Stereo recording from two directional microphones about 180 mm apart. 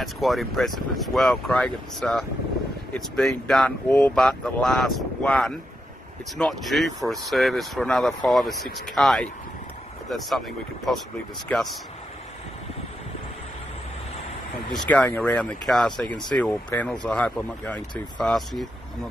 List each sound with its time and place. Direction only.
0.0 s speech: centre (ahead or behind)
11.5 s speech: 10° left (ahead or behind)
14.7 s speech: 10° left (ahead or behind)